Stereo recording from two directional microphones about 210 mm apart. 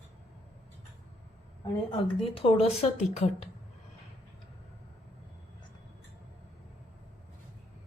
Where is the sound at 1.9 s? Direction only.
25° left (ahead or behind).